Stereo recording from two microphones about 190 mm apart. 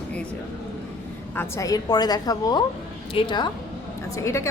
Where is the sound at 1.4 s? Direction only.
15° left (ahead or behind).